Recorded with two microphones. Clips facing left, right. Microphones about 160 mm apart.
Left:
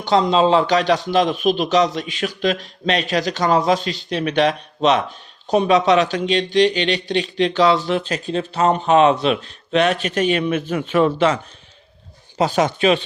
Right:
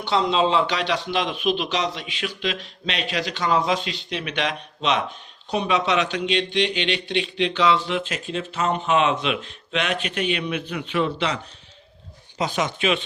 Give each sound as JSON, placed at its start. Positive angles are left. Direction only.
{"t": 0.0, "sound": "a man's voice", "side_deg": 40}
{"t": 12.4, "sound": "a man's voice", "side_deg": 40}